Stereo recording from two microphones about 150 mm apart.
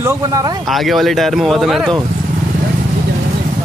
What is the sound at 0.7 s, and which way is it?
Speech, centre (ahead or behind).